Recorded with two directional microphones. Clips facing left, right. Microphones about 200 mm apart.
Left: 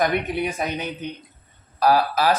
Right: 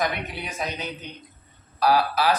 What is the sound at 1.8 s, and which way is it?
Speech, 45° left (ahead or behind).